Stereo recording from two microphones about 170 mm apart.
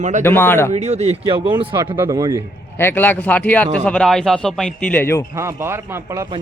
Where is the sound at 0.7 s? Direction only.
40° right (ahead or behind).